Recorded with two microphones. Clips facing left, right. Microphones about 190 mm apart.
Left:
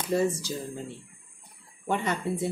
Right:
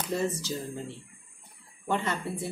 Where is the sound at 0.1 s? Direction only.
10° left (ahead or behind).